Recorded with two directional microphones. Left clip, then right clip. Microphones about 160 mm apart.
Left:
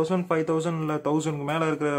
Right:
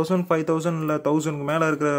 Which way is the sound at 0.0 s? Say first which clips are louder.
Right 2 dB; 25° right (ahead or behind).